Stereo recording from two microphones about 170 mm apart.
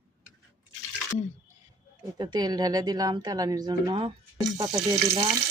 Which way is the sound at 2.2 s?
25° right (ahead or behind).